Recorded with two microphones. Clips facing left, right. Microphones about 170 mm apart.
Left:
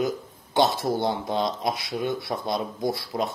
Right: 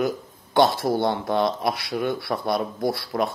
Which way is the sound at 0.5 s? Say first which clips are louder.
Right 3 dB; 55° right (ahead or behind).